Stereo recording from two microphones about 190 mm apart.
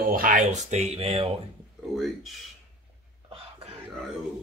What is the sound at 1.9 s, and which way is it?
Speech, centre (ahead or behind).